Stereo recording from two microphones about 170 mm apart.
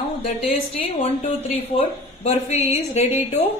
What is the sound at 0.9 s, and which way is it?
Speech, 40° left (ahead or behind).